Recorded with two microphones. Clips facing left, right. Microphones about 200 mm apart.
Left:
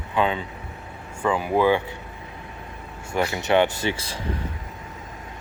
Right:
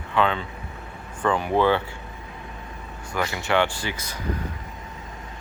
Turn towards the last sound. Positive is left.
turn(degrees=30)  # may be behind; listen again after turning